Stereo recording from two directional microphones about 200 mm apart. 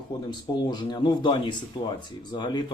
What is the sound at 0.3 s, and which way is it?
Speech, 20° left (ahead or behind).